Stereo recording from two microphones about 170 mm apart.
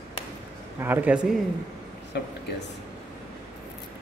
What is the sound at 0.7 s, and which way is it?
Speech, 10° right (ahead or behind).